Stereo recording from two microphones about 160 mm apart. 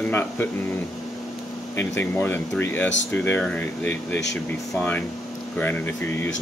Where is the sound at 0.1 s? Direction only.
10° left (ahead or behind).